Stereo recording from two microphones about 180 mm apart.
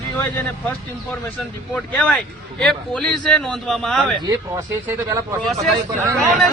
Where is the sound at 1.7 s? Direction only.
5° left (ahead or behind).